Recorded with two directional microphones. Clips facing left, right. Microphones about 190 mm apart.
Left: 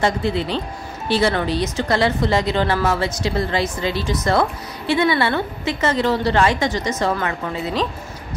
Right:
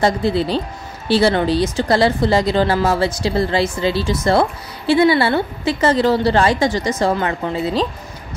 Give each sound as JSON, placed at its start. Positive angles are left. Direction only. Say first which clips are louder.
{"t": 0.0, "sound": "speech", "louder": "right 3 dB", "side_deg": -35}